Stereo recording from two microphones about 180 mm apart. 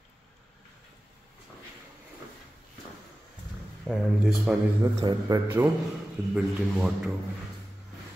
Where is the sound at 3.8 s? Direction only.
Centre (ahead or behind).